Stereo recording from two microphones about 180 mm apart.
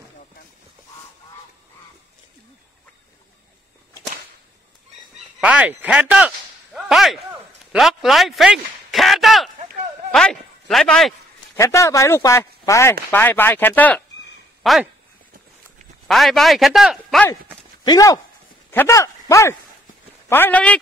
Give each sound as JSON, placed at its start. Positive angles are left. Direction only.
{"t": 5.4, "sound": "speech", "side_deg": -5}
{"t": 11.5, "sound": "speech", "side_deg": 15}
{"t": 16.1, "sound": "a man's voice", "side_deg": 0}
{"t": 17.8, "sound": "speech", "side_deg": 20}